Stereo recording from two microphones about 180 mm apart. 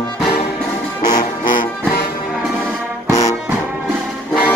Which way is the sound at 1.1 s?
50° left (ahead or behind).